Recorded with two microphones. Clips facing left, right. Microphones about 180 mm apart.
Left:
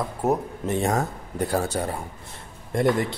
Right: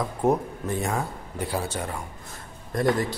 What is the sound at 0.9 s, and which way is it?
Speech, 45° left (ahead or behind).